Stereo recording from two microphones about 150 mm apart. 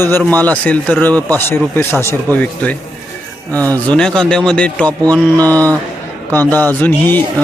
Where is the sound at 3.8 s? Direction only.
5° left (ahead or behind).